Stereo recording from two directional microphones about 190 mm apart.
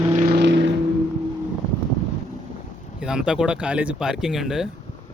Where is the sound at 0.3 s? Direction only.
65° right (ahead or behind).